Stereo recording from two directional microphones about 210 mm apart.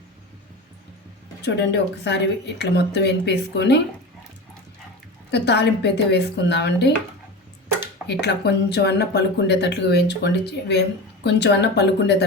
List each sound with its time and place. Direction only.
1.4 s speech: 55° left (ahead or behind)
5.3 s speech: 50° left (ahead or behind)
8.0 s speech: 50° left (ahead or behind)